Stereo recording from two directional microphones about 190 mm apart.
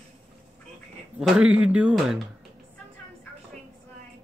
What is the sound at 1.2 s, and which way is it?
Speech, 5° right (ahead or behind).